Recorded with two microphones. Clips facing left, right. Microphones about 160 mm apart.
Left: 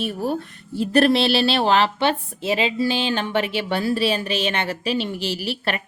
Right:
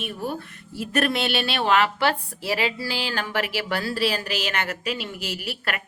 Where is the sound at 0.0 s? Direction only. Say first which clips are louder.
Left 6 dB; 35° left (ahead or behind).